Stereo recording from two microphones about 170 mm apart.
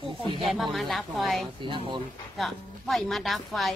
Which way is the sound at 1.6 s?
30° right (ahead or behind).